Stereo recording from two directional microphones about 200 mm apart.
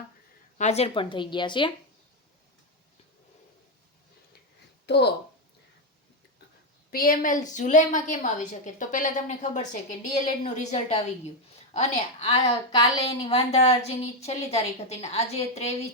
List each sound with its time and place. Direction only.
0.6 s a woman's voice: 30° left (ahead or behind)
4.9 s speech: 55° left (ahead or behind)
6.9 s a woman's voice: 45° left (ahead or behind)